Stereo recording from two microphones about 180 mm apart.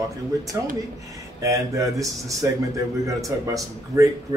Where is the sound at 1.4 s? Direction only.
15° right (ahead or behind).